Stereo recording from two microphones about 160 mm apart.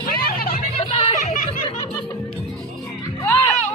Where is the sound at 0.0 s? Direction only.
65° left (ahead or behind).